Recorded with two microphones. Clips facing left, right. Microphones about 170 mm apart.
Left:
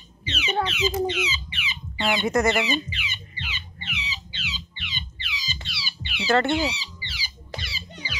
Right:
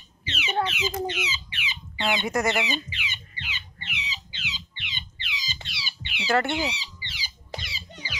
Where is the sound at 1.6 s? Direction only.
15° right (ahead or behind).